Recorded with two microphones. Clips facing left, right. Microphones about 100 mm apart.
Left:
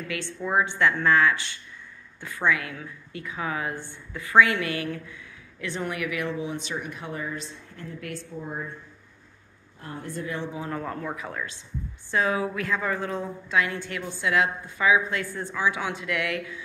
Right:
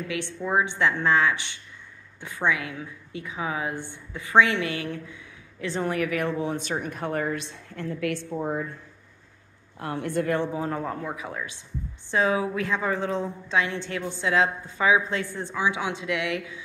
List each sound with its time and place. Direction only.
0.1 s a woman's voice: 20° right (ahead or behind); by 8.2 s 75° right (ahead or behind)
9.8 s a woman's voice: 75° right (ahead or behind); by 10.5 s 55° right (ahead or behind)
10.5 s a woman's voice: 35° right (ahead or behind)